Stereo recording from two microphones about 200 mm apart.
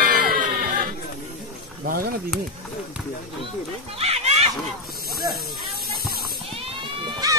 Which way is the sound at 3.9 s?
30° right (ahead or behind).